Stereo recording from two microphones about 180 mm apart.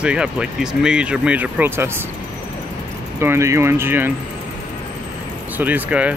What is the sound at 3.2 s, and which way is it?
Speech, 15° right (ahead or behind).